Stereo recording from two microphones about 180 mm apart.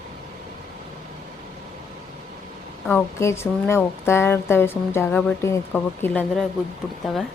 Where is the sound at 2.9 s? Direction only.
15° left (ahead or behind).